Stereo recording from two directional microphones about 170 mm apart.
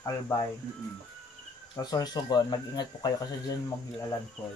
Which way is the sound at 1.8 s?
20° left (ahead or behind).